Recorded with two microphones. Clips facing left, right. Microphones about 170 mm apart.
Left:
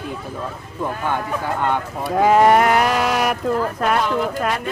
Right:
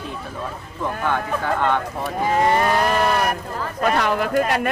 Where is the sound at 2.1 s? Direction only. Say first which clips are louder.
Left 6 dB; 80° left.